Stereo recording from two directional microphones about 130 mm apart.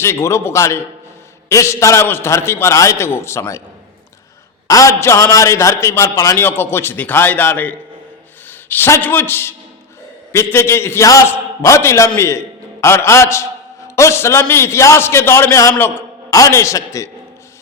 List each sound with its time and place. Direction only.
0.0 s a man's voice: 20° left (ahead or behind)
4.7 s a man's voice: 25° left (ahead or behind)